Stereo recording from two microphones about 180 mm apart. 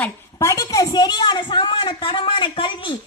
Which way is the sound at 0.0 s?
15° left (ahead or behind).